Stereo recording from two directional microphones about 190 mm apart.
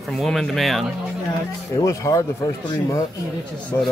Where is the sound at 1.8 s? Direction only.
15° left (ahead or behind).